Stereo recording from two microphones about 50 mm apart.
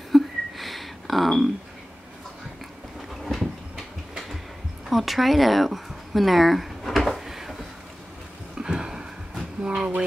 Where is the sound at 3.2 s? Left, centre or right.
Centre.